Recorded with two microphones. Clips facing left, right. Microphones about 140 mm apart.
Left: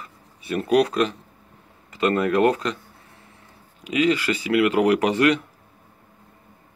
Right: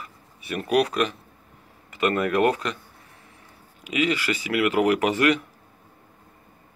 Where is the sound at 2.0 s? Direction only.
30° left (ahead or behind).